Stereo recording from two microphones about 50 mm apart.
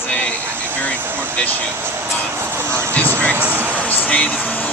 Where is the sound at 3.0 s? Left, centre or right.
Right.